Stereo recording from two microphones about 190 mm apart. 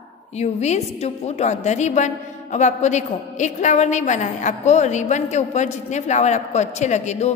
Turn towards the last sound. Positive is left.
turn(degrees=35)  # may be behind; listen again after turning